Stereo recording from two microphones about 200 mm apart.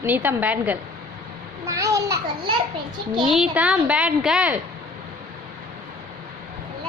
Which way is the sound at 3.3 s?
5° right (ahead or behind).